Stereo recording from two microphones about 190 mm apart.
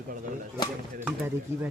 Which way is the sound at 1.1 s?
10° right (ahead or behind).